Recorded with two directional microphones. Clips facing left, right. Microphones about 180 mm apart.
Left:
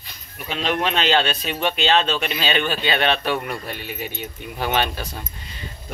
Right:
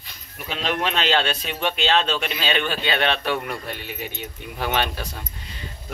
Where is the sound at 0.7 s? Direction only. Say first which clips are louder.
Left 2 dB; centre (ahead or behind).